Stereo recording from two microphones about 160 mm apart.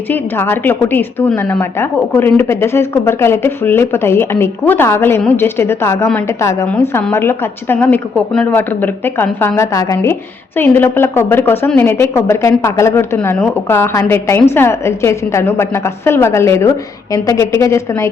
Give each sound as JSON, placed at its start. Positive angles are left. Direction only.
{"t": 0.1, "sound": "a woman's voice", "side_deg": 15}